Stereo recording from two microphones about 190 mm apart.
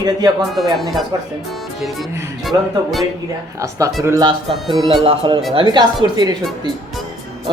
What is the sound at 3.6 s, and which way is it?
Speech, 15° right (ahead or behind).